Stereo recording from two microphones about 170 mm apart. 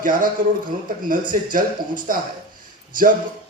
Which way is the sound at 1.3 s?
55° right (ahead or behind).